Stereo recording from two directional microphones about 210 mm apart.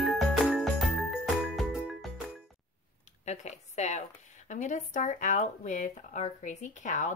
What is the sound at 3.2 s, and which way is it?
A woman's voice, 35° left (ahead or behind).